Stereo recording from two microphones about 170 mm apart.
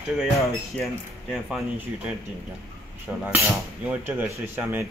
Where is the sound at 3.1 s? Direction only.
10° right (ahead or behind).